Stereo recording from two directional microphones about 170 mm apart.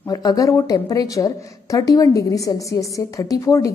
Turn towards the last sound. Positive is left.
turn(degrees=20)  # may be behind; listen again after turning